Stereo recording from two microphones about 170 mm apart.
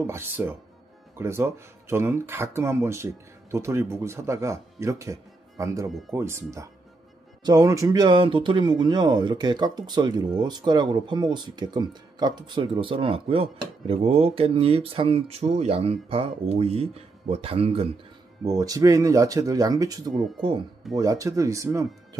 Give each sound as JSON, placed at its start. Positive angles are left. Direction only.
{"t": 0.0, "sound": "speech", "side_deg": -15}
{"t": 5.9, "sound": "speech", "side_deg": 0}
{"t": 6.1, "sound": "speech", "side_deg": -15}
{"t": 18.4, "sound": "speech", "side_deg": -20}